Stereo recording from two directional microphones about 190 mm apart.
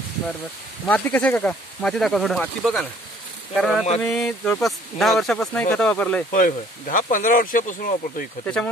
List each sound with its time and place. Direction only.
0.8 s speech: 10° left (ahead or behind)
6.3 s speech: 45° left (ahead or behind)